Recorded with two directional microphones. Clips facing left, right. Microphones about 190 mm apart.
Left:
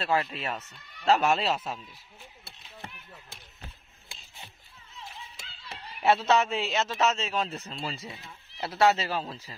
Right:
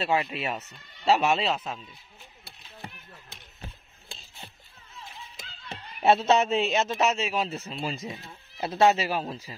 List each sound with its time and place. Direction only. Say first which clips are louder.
0.0 s a man's voice: right 2 dB; 10° right (ahead or behind); by 1.8 s 5° left (ahead or behind)
6.0 s a man's voice: right 2 dB; 20° right (ahead or behind); by 7.7 s 5° right (ahead or behind)
7.7 s a man's voice: right 4 dB; 15° right (ahead or behind)